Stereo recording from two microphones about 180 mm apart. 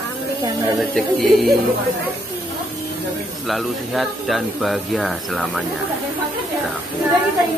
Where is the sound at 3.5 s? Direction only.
Centre (ahead or behind).